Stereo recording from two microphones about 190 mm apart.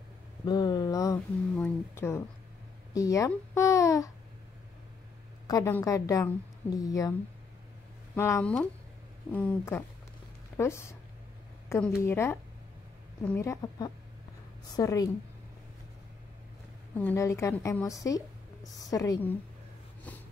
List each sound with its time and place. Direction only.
0.5 s speech: 20° left (ahead or behind)
5.5 s speech: 15° left (ahead or behind)
16.9 s a woman's voice: 10° left (ahead or behind)